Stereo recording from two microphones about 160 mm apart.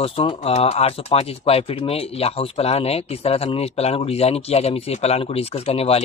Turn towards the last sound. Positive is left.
turn(degrees=40)  # may be behind; listen again after turning